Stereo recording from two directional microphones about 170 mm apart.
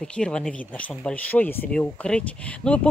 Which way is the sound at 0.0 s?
5° left (ahead or behind).